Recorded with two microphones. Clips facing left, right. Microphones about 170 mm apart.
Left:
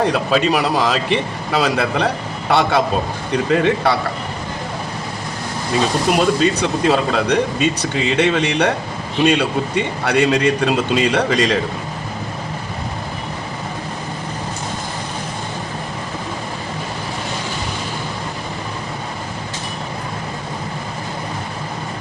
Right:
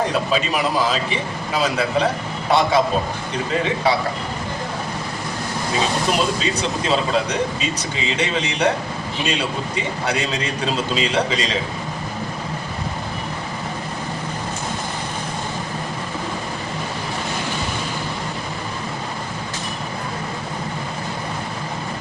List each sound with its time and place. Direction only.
0.1 s a man's voice: 65° left (ahead or behind)
6.4 s a man's voice: 60° left (ahead or behind)